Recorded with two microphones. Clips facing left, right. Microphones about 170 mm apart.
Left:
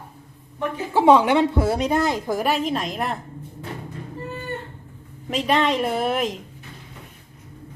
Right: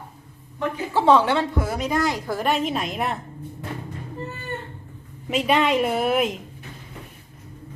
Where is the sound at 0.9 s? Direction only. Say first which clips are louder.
Left 3 dB; 15° left (ahead or behind).